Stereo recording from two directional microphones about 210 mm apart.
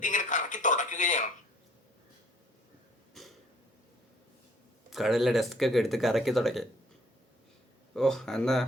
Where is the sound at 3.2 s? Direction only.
Centre (ahead or behind).